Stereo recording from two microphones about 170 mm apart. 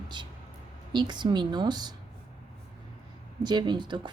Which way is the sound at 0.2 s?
25° right (ahead or behind).